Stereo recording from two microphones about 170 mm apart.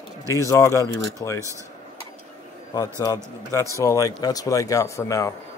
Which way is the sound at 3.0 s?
20° left (ahead or behind).